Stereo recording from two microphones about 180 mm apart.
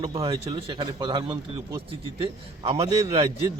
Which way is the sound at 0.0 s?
30° right (ahead or behind).